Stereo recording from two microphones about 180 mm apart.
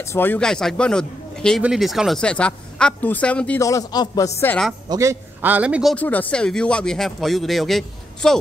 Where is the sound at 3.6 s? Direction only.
20° left (ahead or behind).